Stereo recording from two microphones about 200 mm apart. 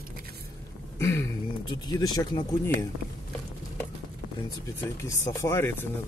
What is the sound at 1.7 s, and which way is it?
Speech, 20° left (ahead or behind).